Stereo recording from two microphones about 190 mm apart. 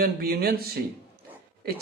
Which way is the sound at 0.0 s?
50° right (ahead or behind).